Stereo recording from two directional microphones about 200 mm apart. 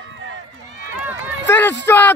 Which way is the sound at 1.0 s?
10° right (ahead or behind).